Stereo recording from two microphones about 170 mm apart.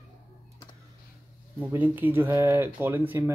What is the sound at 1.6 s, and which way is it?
Speech, 10° right (ahead or behind).